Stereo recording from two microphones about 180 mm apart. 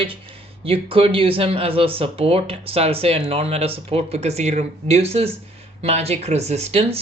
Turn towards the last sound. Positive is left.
turn(degrees=-35)  # may be behind; listen again after turning